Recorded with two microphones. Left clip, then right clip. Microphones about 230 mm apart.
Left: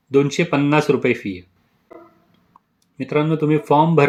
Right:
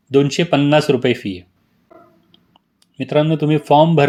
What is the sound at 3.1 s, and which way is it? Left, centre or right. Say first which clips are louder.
Speech: right 3 dB; centre.